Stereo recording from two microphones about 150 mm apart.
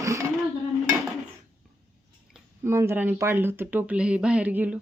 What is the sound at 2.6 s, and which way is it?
Speech, 15° right (ahead or behind).